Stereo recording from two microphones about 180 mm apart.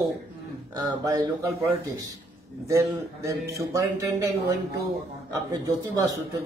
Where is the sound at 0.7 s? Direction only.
20° right (ahead or behind).